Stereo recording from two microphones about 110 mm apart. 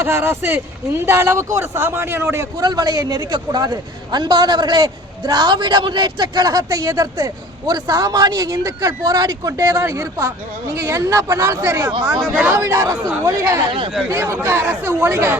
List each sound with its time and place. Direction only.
0.0 s speech: 20° right (ahead or behind)
2.6 s a man's voice: 40° right (ahead or behind); by 15.4 s 20° right (ahead or behind)